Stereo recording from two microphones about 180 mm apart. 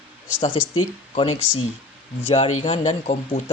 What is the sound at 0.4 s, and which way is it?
Speech, 30° left (ahead or behind).